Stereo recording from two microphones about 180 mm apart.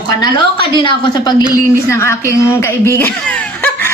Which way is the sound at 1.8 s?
15° left (ahead or behind).